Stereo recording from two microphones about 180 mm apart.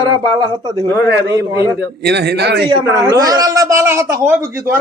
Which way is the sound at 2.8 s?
20° right (ahead or behind).